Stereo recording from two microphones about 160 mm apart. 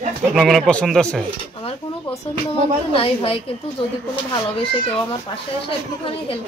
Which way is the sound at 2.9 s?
35° left (ahead or behind).